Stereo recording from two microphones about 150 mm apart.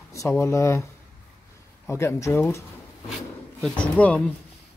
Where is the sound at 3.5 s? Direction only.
5° left (ahead or behind).